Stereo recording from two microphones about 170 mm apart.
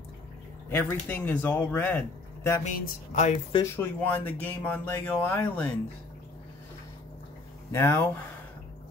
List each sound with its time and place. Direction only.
0.7 s a man's voice: 15° left (ahead or behind)
2.6 s speech: 45° left (ahead or behind)
3.7 s a man's voice: 10° left (ahead or behind)
7.7 s a man's voice: 15° left (ahead or behind)